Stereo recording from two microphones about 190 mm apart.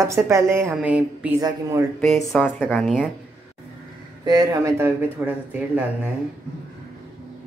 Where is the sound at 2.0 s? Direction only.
5° left (ahead or behind).